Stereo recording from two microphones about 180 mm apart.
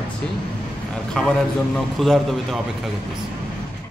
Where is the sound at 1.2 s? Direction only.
Centre (ahead or behind).